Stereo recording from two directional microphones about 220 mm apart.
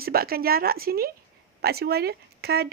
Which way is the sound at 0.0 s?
45° right (ahead or behind).